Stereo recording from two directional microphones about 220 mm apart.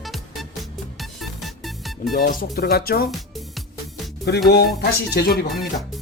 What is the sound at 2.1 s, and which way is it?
Speech, 40° left (ahead or behind).